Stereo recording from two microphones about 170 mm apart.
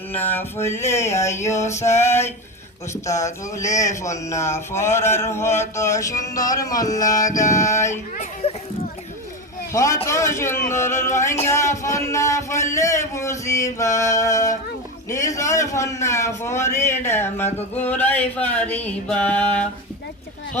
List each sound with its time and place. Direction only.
0.1 s a man's voice: 10° left (ahead or behind)
8.2 s speech: 35° left (ahead or behind)
9.7 s a man's voice: 20° left (ahead or behind)